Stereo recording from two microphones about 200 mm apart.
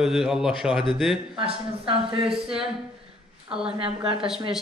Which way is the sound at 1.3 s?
25° right (ahead or behind).